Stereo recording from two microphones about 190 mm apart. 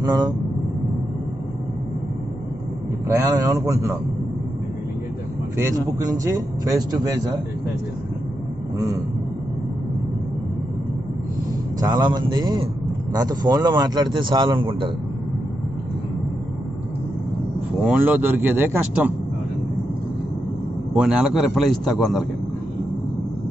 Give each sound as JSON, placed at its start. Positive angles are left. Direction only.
{"t": 0.0, "sound": "speech", "side_deg": -20}
{"t": 3.3, "sound": "speech", "side_deg": -20}
{"t": 6.1, "sound": "speech", "side_deg": -20}
{"t": 11.8, "sound": "speech", "side_deg": -20}
{"t": 17.8, "sound": "speech", "side_deg": -10}
{"t": 20.9, "sound": "a man's voice", "side_deg": -5}